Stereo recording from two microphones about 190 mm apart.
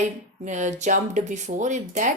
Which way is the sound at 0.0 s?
40° right (ahead or behind).